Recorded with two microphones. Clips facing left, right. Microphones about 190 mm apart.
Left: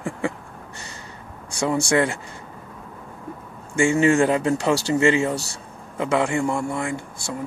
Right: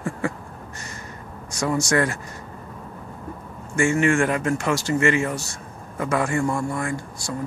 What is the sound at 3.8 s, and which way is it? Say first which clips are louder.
Speech: left 2 dB; 20° left (ahead or behind).